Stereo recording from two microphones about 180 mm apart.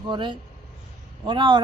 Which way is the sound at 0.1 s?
25° right (ahead or behind).